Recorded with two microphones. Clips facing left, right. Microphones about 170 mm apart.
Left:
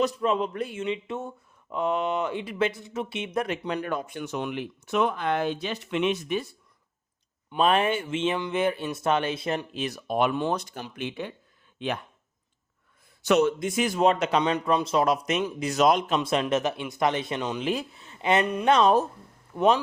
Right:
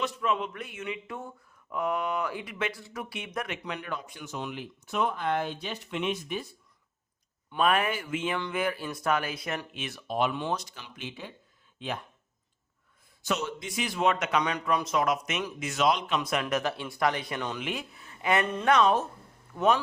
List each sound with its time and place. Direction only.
0.0 s speech: 35° left (ahead or behind)
3.4 s speech: 35° left (ahead or behind); by 6.5 s 75° left (ahead or behind)
7.5 s speech: 25° left (ahead or behind)
10.1 s speech: 55° left (ahead or behind)
13.2 s speech: 60° left (ahead or behind); by 16.1 s 45° left (ahead or behind)
16.1 s speech: 30° left (ahead or behind)
17.6 s speech: 35° left (ahead or behind)